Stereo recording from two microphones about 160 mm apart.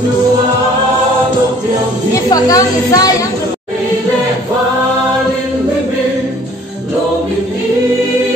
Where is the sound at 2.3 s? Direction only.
25° left (ahead or behind).